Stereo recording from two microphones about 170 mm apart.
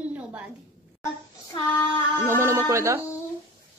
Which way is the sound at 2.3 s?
15° right (ahead or behind).